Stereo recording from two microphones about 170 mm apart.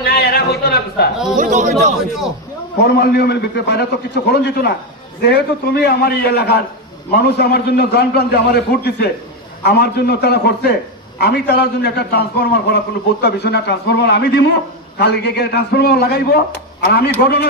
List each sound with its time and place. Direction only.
0.0 s a sound: 70° left (ahead or behind)
1.3 s speech: 45° right (ahead or behind)
2.8 s a man's voice: 75° left (ahead or behind)